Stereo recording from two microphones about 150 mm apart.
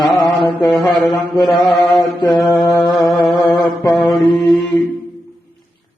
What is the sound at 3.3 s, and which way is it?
Mantra, 30° left (ahead or behind).